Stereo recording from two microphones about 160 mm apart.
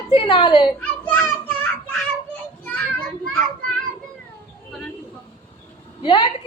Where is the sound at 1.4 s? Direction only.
10° left (ahead or behind).